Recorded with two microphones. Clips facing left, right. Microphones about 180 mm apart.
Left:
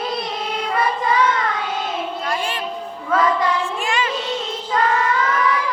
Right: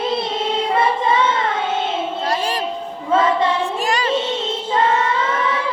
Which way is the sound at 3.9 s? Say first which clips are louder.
Right 2 dB; 40° right (ahead or behind).